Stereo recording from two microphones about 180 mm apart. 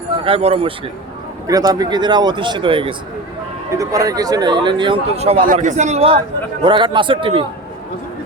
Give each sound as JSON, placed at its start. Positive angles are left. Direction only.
{"t": 0.3, "sound": "speech", "side_deg": -30}
{"t": 1.5, "sound": "speech", "side_deg": -20}